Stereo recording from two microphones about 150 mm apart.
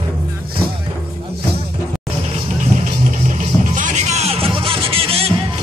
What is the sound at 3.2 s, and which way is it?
Music, 60° right (ahead or behind).